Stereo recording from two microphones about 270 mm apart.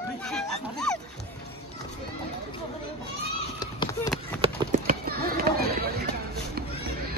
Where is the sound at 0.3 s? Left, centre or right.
Centre.